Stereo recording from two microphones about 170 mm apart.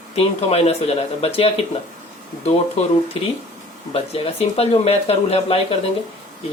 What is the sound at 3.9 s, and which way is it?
Speech, 35° left (ahead or behind).